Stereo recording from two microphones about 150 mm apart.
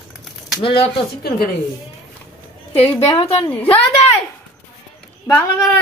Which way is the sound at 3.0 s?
40° left (ahead or behind).